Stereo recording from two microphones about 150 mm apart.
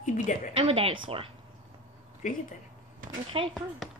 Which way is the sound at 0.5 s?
40° right (ahead or behind).